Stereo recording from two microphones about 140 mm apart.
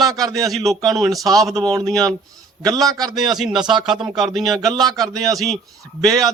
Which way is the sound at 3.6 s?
30° right (ahead or behind).